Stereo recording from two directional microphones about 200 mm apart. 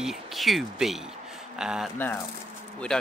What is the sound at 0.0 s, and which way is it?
Speech, centre (ahead or behind).